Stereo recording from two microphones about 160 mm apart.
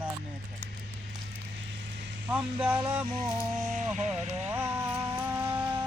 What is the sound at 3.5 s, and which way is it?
Speech, 50° right (ahead or behind).